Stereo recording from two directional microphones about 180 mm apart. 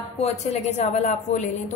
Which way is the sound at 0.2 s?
40° left (ahead or behind).